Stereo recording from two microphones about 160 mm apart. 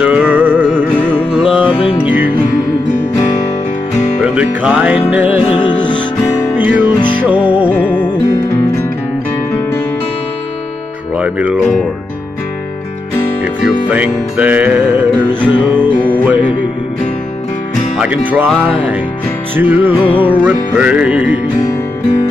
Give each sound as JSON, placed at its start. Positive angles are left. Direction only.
{"t": 0.0, "sound": "music", "side_deg": -10}
{"t": 4.2, "sound": "music", "side_deg": -5}
{"t": 5.4, "sound": "music", "side_deg": 30}
{"t": 6.5, "sound": "music", "side_deg": -10}
{"t": 7.0, "sound": "music", "side_deg": 30}
{"t": 7.2, "sound": "music", "side_deg": -10}
{"t": 8.0, "sound": "music", "side_deg": 20}
{"t": 11.1, "sound": "music", "side_deg": -10}
{"t": 13.8, "sound": "music", "side_deg": -10}
{"t": 17.9, "sound": "music", "side_deg": -5}
{"t": 19.5, "sound": "music", "side_deg": -10}